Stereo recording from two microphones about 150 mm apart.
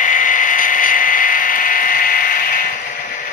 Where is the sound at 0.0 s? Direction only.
60° left (ahead or behind).